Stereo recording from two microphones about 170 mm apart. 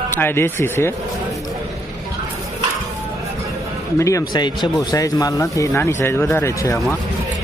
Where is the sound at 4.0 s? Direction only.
20° left (ahead or behind).